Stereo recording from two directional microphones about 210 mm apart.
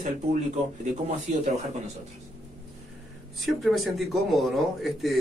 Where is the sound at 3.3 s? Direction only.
Centre (ahead or behind).